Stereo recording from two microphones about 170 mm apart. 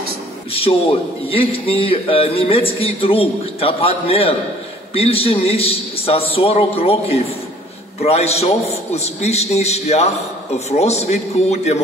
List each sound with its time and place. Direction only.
0.5 s a man's voice: 35° left (ahead or behind)